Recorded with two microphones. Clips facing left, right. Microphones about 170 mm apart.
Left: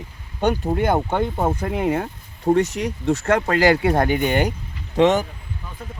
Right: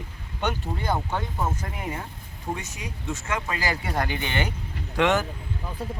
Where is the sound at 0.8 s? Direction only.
55° left (ahead or behind).